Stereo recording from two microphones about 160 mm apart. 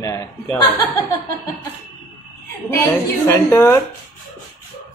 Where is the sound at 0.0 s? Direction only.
20° left (ahead or behind).